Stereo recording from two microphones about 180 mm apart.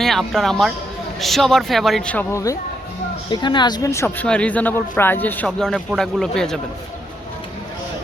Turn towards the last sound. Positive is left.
turn(degrees=5)  # may be behind; listen again after turning